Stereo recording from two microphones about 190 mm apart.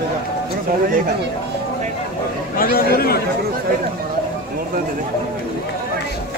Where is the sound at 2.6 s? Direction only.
50° left (ahead or behind).